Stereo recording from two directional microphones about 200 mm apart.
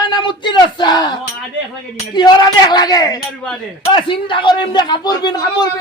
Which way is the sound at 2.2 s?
20° left (ahead or behind).